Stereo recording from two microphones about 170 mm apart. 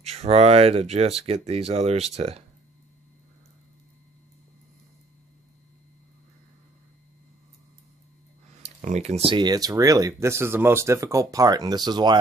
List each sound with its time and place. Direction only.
0.0 s speech: 40° right (ahead or behind)
8.6 s speech: 40° right (ahead or behind); by 12.2 s 25° right (ahead or behind)